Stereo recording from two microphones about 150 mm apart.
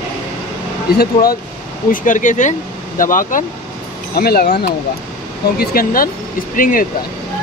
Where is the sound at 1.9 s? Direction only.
60° left (ahead or behind).